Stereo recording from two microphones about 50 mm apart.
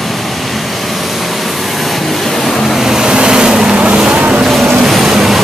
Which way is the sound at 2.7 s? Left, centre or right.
Centre.